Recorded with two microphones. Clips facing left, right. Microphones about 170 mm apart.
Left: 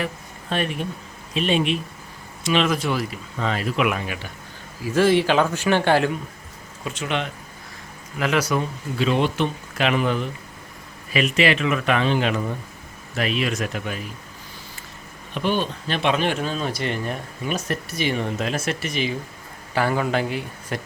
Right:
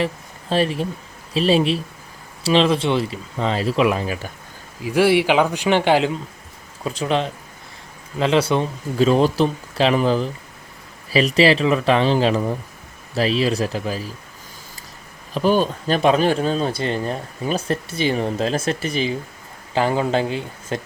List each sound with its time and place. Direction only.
0.5 s speech: 30° right (ahead or behind)
4.8 s speech: 15° right (ahead or behind)
6.8 s speech: 35° right (ahead or behind)
15.3 s speech: 35° right (ahead or behind)